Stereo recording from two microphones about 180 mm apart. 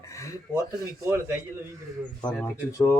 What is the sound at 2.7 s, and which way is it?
Speech, 20° left (ahead or behind).